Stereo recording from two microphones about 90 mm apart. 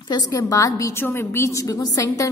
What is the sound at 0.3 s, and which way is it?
Speech, 40° left (ahead or behind).